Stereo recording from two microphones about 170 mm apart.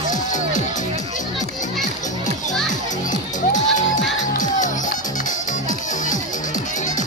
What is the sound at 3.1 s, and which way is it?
Music, 45° left (ahead or behind).